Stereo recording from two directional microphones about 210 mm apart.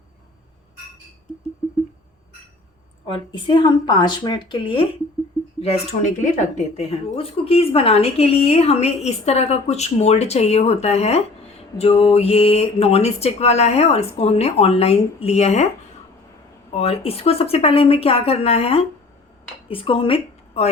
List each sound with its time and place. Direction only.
3.1 s speech: 20° left (ahead or behind)
16.8 s a woman's voice: 30° left (ahead or behind)